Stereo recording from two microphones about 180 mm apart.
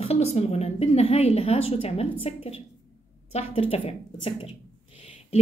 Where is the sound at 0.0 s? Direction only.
35° left (ahead or behind).